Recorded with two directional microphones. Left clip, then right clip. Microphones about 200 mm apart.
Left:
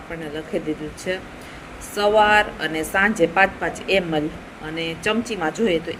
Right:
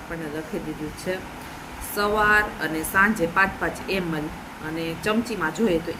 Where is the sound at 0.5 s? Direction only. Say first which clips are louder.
Left 10 dB; 15° left (ahead or behind).